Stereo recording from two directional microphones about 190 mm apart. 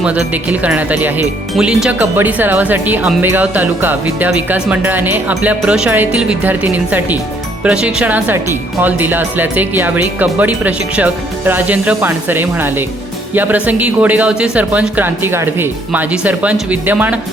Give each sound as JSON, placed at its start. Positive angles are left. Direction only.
{"t": 0.0, "sound": "speech", "side_deg": -5}